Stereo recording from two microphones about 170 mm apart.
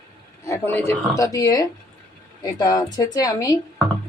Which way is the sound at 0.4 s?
15° left (ahead or behind).